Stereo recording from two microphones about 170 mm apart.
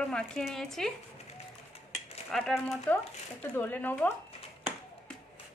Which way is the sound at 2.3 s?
Centre (ahead or behind).